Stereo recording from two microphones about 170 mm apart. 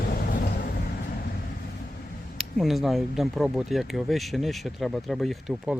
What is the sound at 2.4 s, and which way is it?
Speech, centre (ahead or behind).